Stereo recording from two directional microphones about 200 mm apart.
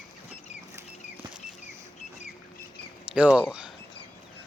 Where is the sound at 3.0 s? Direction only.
5° right (ahead or behind).